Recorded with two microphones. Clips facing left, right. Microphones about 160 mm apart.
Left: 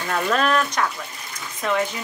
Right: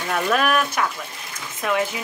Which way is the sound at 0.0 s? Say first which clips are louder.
Even; 5° right (ahead or behind).